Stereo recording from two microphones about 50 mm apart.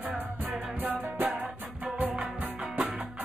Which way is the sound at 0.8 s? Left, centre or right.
Right.